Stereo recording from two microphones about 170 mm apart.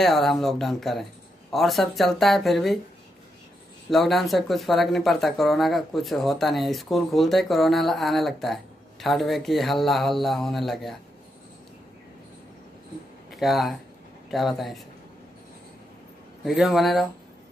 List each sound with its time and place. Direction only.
0.0 s speech: centre (ahead or behind)
3.9 s speech: centre (ahead or behind)
13.3 s speech: centre (ahead or behind)
16.4 s speech: centre (ahead or behind)